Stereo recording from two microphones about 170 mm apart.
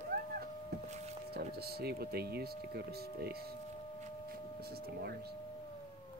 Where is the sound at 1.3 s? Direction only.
65° right (ahead or behind).